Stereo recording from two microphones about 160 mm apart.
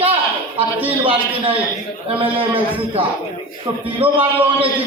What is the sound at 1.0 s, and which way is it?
A man's voice, 35° right (ahead or behind).